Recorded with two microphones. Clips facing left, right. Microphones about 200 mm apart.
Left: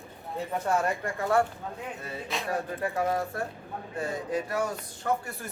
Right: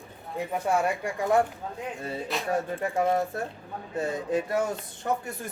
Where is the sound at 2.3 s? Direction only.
Centre (ahead or behind).